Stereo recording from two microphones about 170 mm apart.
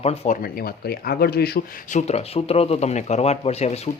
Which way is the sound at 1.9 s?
35° left (ahead or behind).